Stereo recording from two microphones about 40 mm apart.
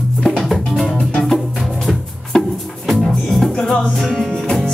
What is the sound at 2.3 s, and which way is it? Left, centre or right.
Music, centre.